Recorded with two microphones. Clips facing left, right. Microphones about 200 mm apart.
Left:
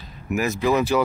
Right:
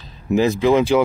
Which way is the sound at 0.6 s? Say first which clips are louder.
Right 3 dB; 20° right (ahead or behind).